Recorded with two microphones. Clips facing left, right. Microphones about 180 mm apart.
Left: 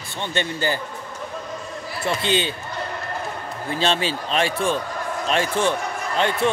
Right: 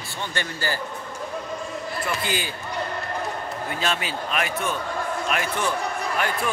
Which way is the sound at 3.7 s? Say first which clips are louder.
Left 6 dB; 30° left (ahead or behind).